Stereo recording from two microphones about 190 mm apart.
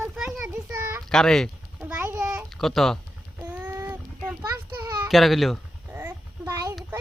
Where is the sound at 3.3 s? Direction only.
10° right (ahead or behind).